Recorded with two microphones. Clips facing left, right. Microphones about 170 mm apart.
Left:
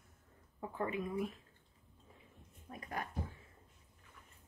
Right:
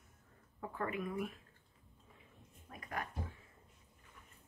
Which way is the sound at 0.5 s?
20° left (ahead or behind).